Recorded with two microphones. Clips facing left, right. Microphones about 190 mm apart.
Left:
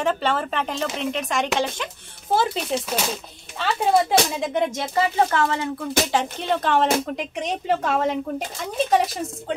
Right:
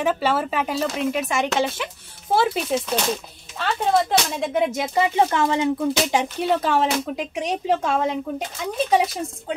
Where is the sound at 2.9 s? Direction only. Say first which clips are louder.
Right 3 dB; 5° left (ahead or behind).